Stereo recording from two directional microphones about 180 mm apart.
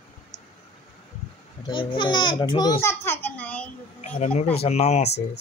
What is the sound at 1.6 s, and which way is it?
A child's voice, 25° left (ahead or behind).